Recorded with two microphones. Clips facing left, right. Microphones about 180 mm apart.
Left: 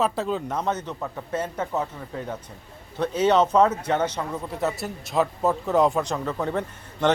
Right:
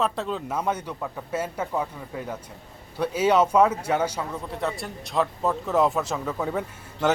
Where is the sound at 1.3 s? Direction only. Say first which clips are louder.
Left 1 dB; 10° right (ahead or behind).